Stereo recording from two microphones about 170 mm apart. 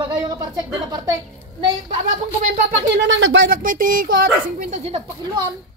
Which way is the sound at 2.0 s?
45° right (ahead or behind).